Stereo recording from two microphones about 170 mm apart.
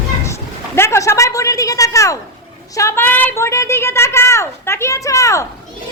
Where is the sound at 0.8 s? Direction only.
15° left (ahead or behind).